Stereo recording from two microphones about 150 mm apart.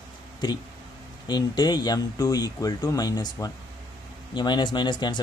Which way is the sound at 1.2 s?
30° left (ahead or behind).